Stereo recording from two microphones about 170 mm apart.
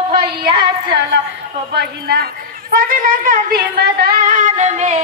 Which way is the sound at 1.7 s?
65° right (ahead or behind).